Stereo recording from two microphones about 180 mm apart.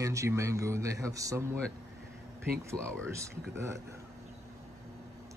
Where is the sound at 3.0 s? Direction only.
15° right (ahead or behind).